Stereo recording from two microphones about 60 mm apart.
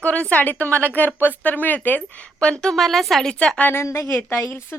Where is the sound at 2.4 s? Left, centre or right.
Centre.